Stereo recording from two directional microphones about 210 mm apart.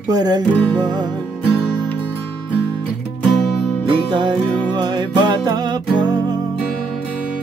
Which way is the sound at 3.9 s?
20° right (ahead or behind).